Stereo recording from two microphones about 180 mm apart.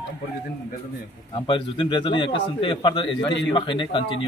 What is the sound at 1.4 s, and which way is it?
A man's voice, 25° left (ahead or behind).